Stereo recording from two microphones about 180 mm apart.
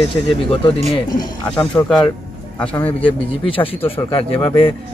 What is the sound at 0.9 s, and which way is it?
Speech, 25° left (ahead or behind).